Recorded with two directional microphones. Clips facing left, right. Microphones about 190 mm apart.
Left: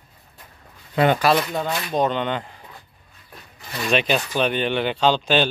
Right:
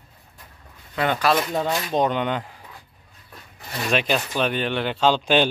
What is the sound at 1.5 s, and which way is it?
Speech, 30° right (ahead or behind).